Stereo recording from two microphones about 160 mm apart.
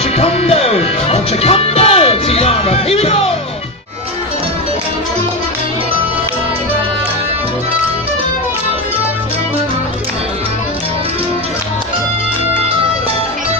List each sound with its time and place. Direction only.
0.2 s music: 40° left (ahead or behind)